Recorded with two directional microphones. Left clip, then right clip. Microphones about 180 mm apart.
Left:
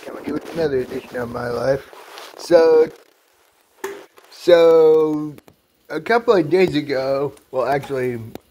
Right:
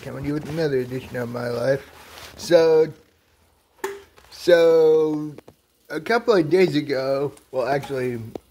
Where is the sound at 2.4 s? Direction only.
5° right (ahead or behind).